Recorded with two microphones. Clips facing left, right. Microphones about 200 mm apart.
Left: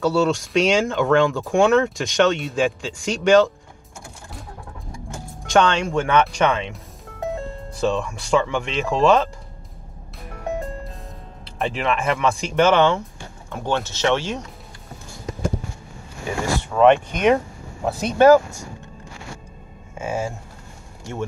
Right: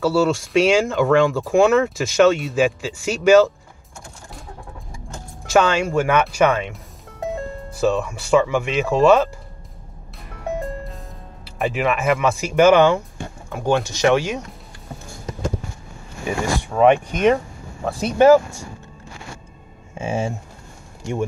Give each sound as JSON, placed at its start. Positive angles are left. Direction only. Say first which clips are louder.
{"t": 0.0, "sound": "speech", "louder": "right 1 dB", "side_deg": 0}
{"t": 5.5, "sound": "speech", "louder": "right 1 dB", "side_deg": -5}
{"t": 11.4, "sound": "speech", "louder": "right 2 dB", "side_deg": -5}
{"t": 16.3, "sound": "speech", "louder": "right 1 dB", "side_deg": -15}
{"t": 20.0, "sound": "speech", "louder": "right 2 dB", "side_deg": -25}